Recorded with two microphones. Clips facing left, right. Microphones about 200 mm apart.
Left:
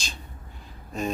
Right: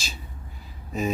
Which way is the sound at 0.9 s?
5° right (ahead or behind).